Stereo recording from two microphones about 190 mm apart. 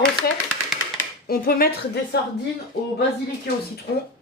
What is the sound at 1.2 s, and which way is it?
Speech, 55° left (ahead or behind).